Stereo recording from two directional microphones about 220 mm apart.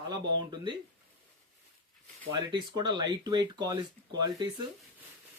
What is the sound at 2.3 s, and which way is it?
A man's voice, 20° right (ahead or behind).